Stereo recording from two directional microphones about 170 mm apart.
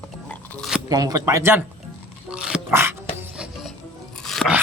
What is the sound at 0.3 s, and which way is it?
Music, 5° left (ahead or behind).